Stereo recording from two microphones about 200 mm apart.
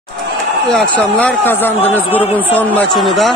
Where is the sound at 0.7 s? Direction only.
10° left (ahead or behind).